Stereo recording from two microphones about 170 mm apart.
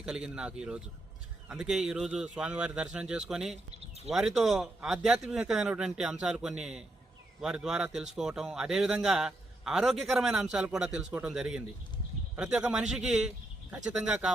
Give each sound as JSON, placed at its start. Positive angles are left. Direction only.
{"t": 0.0, "sound": "speech", "side_deg": -5}